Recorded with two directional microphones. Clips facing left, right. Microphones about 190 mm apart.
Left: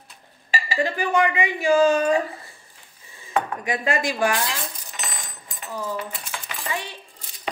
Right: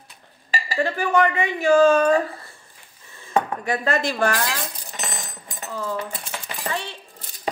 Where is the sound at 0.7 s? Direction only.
15° left (ahead or behind).